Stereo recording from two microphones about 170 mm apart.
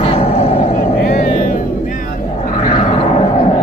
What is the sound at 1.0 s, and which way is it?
Vehicle, 55° left (ahead or behind).